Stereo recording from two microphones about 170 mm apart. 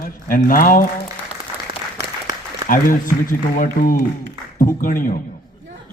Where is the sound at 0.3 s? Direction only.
55° left (ahead or behind).